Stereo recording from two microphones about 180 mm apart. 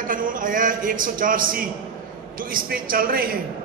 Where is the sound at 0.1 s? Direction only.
50° right (ahead or behind).